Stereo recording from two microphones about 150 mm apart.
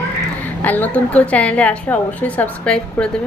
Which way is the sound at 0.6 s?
10° left (ahead or behind).